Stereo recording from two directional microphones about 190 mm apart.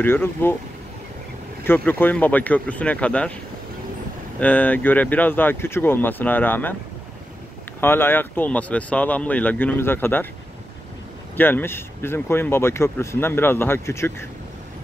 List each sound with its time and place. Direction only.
0.0 s speech: 10° left (ahead or behind)
1.6 s speech: 10° left (ahead or behind)
4.4 s speech: 10° left (ahead or behind)
7.8 s speech: 10° left (ahead or behind)
11.3 s speech: 10° left (ahead or behind)